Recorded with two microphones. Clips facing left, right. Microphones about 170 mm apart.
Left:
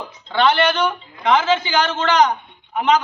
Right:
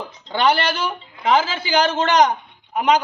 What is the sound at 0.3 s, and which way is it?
Speech, 40° right (ahead or behind).